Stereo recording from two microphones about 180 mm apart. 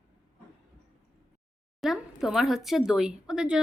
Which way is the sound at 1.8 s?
Centre (ahead or behind).